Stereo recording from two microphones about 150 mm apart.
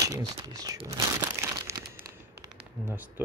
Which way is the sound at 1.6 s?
20° right (ahead or behind).